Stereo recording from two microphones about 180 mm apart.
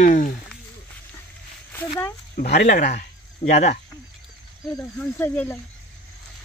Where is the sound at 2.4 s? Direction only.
60° left (ahead or behind).